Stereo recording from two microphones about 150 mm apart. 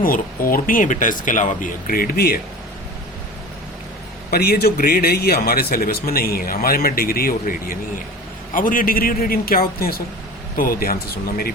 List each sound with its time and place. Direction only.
0.0 s speech: 70° left (ahead or behind); by 2.4 s 85° left
4.3 s a man's voice: 90° left